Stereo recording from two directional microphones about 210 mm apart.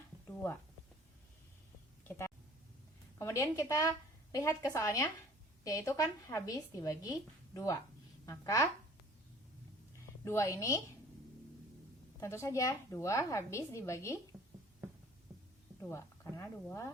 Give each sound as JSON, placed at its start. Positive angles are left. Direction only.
{"t": 2.0, "sound": "a woman's voice", "side_deg": 10}
{"t": 10.2, "sound": "a woman's voice", "side_deg": 15}
{"t": 12.2, "sound": "a woman's voice", "side_deg": 15}
{"t": 15.8, "sound": "speech", "side_deg": 15}